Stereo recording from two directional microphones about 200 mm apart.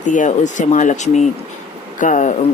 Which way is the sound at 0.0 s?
40° left (ahead or behind).